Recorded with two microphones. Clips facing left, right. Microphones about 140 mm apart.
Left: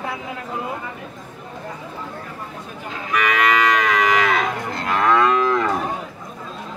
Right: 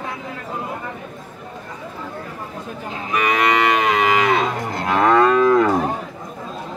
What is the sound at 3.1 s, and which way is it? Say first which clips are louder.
Moo: right 1 dB; 30° right (ahead or behind).